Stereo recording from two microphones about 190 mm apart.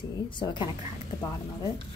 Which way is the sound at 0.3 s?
25° left (ahead or behind).